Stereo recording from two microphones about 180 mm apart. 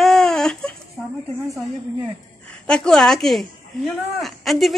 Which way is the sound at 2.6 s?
5° left (ahead or behind).